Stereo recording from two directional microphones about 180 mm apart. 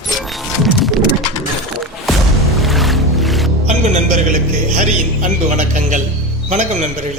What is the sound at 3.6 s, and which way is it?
Music, 40° right (ahead or behind).